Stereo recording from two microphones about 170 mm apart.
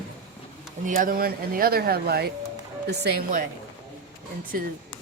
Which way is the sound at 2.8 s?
80° right.